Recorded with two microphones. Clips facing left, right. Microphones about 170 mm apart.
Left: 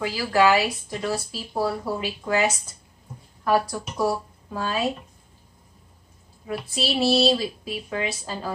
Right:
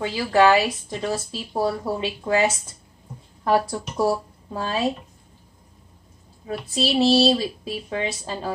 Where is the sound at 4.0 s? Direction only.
30° right (ahead or behind).